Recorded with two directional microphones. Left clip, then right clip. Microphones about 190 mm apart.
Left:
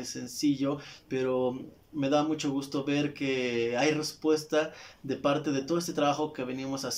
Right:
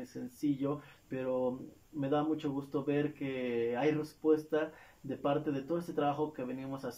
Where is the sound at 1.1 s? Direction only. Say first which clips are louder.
Left 5 dB; centre (ahead or behind).